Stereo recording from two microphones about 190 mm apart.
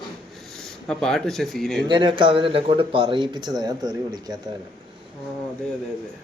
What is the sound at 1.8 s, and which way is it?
Speech, 25° right (ahead or behind).